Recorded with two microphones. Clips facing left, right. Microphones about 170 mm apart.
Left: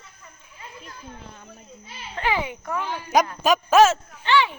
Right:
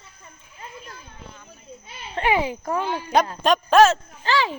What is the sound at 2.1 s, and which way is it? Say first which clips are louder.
Speech: right 4 dB; 25° right (ahead or behind).